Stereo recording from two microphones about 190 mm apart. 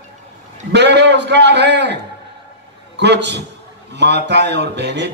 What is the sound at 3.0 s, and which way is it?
A man's voice, 65° right (ahead or behind).